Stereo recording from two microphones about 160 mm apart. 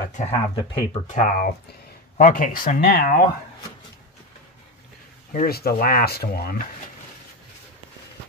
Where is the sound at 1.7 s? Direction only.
85° left.